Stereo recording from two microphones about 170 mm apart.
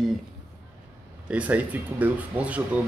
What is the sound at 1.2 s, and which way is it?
Speech, 10° right (ahead or behind).